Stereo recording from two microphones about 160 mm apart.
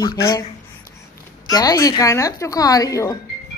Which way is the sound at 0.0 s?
25° left (ahead or behind).